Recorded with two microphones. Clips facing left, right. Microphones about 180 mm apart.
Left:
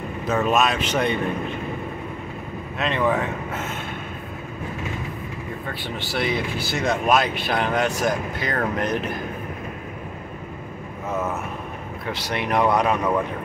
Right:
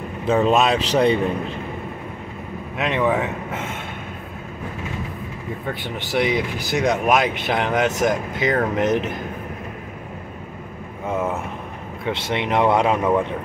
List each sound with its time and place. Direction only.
0.3 s speech: 30° right (ahead or behind)
2.8 s a man's voice: 15° right (ahead or behind)
5.9 s speech: 20° right (ahead or behind)
12.1 s speech: 25° right (ahead or behind)